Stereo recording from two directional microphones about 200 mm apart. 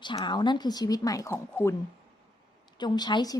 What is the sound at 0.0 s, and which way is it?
A woman's voice, 25° left (ahead or behind).